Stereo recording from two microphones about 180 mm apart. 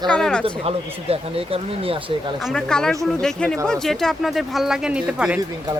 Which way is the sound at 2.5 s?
5° left (ahead or behind).